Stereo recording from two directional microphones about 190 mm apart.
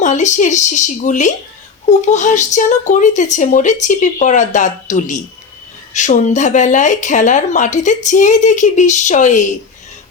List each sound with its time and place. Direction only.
0.0 s speech: 40° left (ahead or behind)